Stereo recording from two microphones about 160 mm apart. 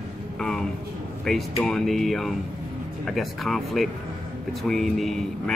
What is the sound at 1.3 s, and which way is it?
A man's voice, 5° left (ahead or behind).